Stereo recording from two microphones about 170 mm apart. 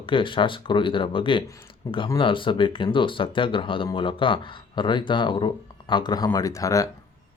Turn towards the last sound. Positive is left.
turn(degrees=20)  # may be behind; listen again after turning